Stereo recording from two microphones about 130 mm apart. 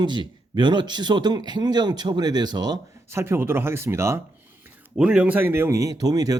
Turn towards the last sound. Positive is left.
turn(degrees=-30)  # may be behind; listen again after turning